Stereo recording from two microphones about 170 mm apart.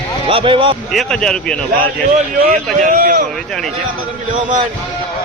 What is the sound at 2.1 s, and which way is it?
A man's voice, 55° right (ahead or behind).